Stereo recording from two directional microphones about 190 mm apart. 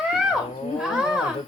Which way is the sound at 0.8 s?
5° right (ahead or behind).